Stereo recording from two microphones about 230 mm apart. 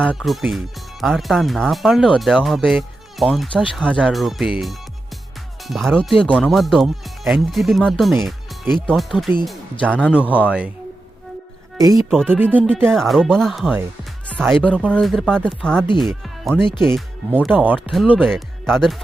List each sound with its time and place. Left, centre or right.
0.0 s speech: centre
10.3 s speech: centre
11.8 s speech: centre
12.1 s speech: centre
12.4 s speech: centre